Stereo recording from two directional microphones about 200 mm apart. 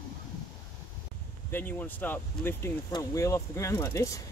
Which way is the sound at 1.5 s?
10° left (ahead or behind).